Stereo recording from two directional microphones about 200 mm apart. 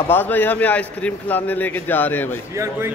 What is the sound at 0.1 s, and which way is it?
A man's voice, 10° left (ahead or behind).